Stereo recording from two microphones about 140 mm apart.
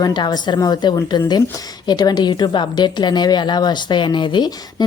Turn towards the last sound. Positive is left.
turn(degrees=30)  # may be behind; listen again after turning